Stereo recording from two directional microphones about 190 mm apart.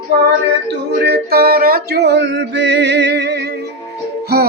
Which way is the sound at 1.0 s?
55° right (ahead or behind).